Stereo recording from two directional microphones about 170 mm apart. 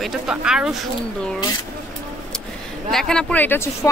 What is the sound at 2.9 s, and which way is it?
Speech, 5° left (ahead or behind).